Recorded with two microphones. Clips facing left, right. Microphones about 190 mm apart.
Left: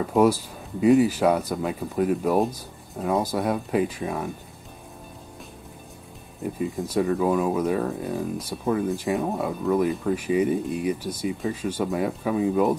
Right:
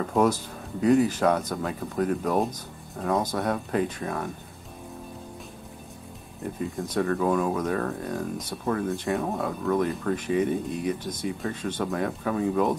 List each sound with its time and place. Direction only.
0.0 s speech: 10° left (ahead or behind)
6.4 s speech: centre (ahead or behind)